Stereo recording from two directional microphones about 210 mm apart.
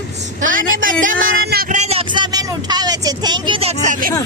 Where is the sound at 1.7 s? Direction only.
30° right (ahead or behind).